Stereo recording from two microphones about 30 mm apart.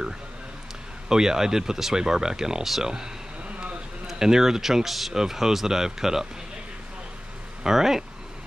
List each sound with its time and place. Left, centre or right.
1.0 s speech: centre
4.2 s speech: centre
5.1 s speech: centre
7.6 s speech: centre